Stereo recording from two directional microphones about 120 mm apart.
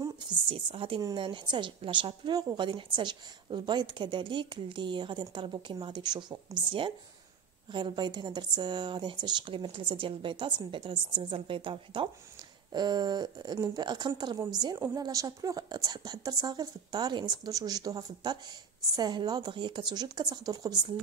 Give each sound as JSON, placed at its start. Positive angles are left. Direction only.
{"t": 0.5, "sound": "a woman's voice", "side_deg": -50}